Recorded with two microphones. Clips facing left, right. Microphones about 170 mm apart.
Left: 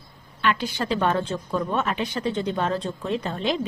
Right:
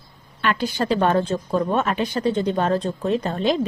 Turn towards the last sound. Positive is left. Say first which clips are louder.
# right 5 dB
turn(degrees=-40)  # may be behind; listen again after turning